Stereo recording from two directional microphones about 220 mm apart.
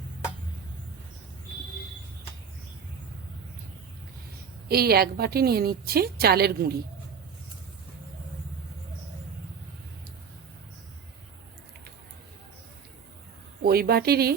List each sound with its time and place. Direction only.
4.7 s a woman's voice: 45° right (ahead or behind)
13.6 s a woman's voice: 45° right (ahead or behind)